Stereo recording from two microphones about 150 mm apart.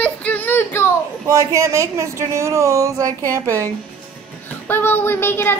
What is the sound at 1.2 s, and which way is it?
Speech, 20° right (ahead or behind).